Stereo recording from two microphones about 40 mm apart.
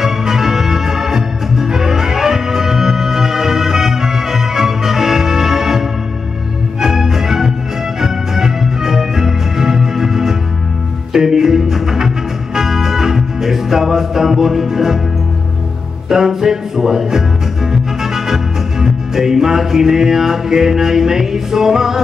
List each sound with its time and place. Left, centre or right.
0.0 s music: centre
16.1 s music: centre